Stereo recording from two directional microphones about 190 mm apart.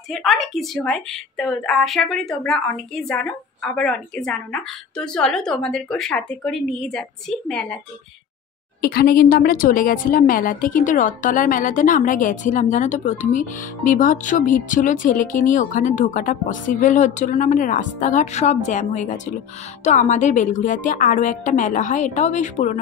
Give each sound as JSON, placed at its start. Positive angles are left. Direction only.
{"t": 0.1, "sound": "a woman's voice", "side_deg": 0}
{"t": 8.8, "sound": "a woman's voice", "side_deg": 55}